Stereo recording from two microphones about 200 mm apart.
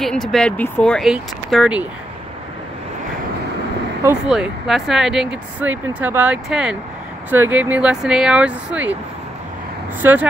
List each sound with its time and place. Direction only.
0.0 s speech: centre (ahead or behind)
4.3 s speech: centre (ahead or behind)
10.0 s speech: 10° right (ahead or behind)